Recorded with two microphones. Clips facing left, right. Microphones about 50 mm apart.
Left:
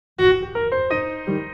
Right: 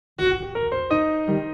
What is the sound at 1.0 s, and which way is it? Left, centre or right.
Music, left.